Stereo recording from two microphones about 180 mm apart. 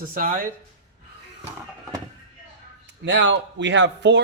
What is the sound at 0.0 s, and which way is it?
Speech, 50° right (ahead or behind).